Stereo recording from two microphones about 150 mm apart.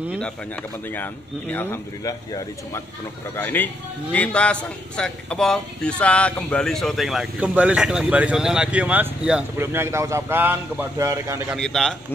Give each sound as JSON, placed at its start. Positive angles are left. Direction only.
{"t": 0.8, "sound": "a man's voice", "side_deg": 15}
{"t": 11.5, "sound": "a man's voice", "side_deg": 5}